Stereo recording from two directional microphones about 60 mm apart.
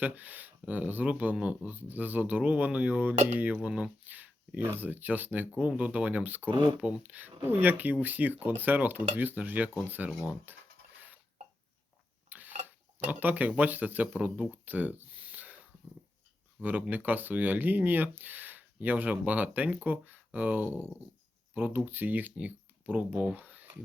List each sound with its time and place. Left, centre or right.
0.0 s speech: right
4.0 s a sound: right
4.8 s speech: right
12.3 s tick-tock: right
13.6 s speech: right
14.5 s a sound: right
16.6 s speech: right